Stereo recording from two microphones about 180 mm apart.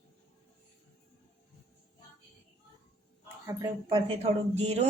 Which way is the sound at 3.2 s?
15° right (ahead or behind).